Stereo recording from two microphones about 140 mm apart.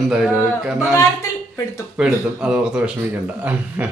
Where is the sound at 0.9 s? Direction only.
20° left (ahead or behind).